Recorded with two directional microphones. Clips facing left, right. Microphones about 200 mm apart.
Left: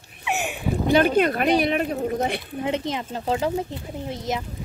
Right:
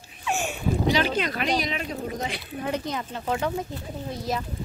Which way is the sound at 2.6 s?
25° left (ahead or behind).